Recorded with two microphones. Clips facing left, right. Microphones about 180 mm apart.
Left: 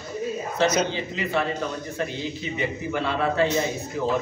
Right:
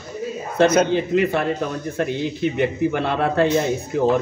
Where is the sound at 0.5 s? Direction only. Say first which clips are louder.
Right 8 dB; 55° right (ahead or behind).